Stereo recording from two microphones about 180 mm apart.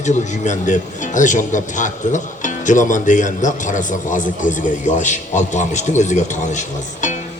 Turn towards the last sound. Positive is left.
turn(degrees=45)  # may be behind; listen again after turning